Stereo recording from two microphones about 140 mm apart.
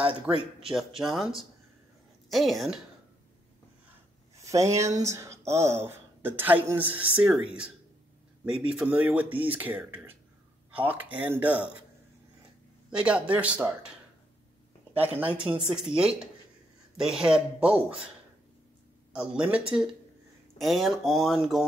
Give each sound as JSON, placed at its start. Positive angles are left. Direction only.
{"t": 0.6, "sound": "speech", "side_deg": -5}
{"t": 4.4, "sound": "speech", "side_deg": -20}
{"t": 8.7, "sound": "speech", "side_deg": -10}
{"t": 12.9, "sound": "speech", "side_deg": -10}
{"t": 15.0, "sound": "speech", "side_deg": -10}
{"t": 19.1, "sound": "speech", "side_deg": -5}